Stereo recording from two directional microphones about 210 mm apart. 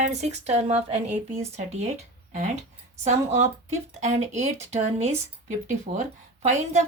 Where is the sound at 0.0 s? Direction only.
30° right (ahead or behind).